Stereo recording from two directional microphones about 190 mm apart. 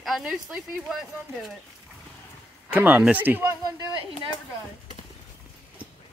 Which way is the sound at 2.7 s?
5° right (ahead or behind).